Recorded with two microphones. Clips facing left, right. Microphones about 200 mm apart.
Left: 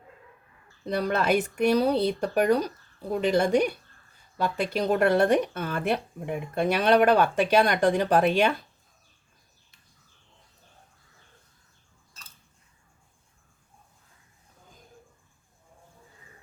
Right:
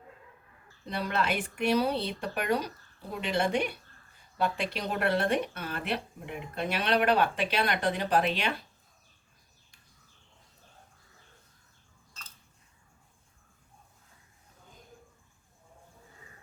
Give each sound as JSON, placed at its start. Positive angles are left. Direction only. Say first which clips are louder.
{"t": 0.9, "sound": "speech", "louder": "left 6 dB", "side_deg": 45}